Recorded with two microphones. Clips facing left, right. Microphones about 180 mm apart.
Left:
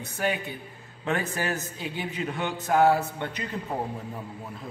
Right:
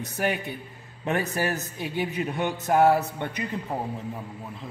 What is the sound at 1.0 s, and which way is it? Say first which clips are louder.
A man's voice: right 2 dB; 15° right (ahead or behind).